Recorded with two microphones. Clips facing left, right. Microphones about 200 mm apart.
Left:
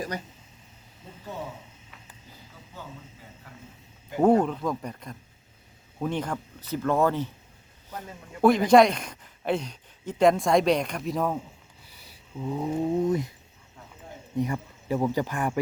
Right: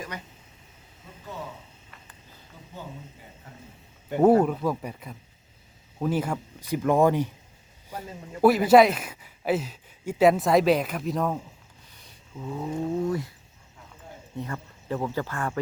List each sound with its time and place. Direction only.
2.8 s speech: 20° right (ahead or behind)
4.2 s speech: 5° right (ahead or behind)
11.9 s a sound: 5° left (ahead or behind)
14.3 s speech: 15° left (ahead or behind)